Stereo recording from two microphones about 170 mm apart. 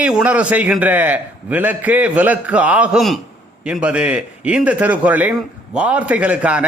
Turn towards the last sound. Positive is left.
turn(degrees=-10)  # may be behind; listen again after turning